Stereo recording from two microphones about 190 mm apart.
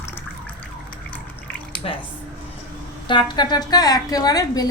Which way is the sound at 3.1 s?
25° left (ahead or behind).